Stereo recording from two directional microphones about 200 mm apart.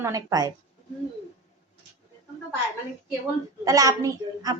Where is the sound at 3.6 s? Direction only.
15° right (ahead or behind).